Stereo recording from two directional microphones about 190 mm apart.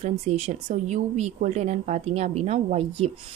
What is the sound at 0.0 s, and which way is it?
A woman's voice, 35° right (ahead or behind).